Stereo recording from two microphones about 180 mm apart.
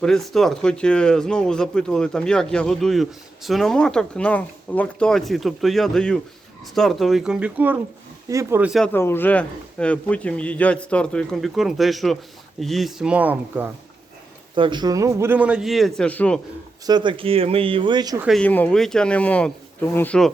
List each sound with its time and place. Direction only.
0.0 s speech: centre (ahead or behind); by 8.7 s 15° right (ahead or behind)
8.7 s a man's voice: 5° left (ahead or behind)
14.5 s speech: 25° right (ahead or behind); by 16.4 s 5° left (ahead or behind)
16.8 s speech: 25° right (ahead or behind)
18.2 s speech: centre (ahead or behind)